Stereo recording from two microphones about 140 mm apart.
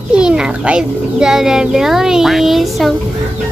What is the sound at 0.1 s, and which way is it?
A child's voice, 5° right (ahead or behind).